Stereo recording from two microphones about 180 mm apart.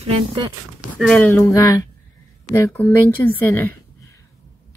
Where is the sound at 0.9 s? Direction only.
5° left (ahead or behind).